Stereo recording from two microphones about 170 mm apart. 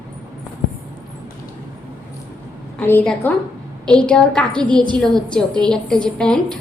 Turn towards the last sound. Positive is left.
turn(degrees=5)  # may be behind; listen again after turning